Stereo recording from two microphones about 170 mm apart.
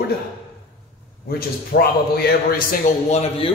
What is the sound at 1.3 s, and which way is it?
A man's voice, 65° left (ahead or behind).